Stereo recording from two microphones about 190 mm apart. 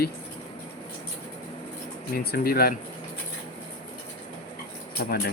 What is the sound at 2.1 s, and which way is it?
Speech, 50° left (ahead or behind).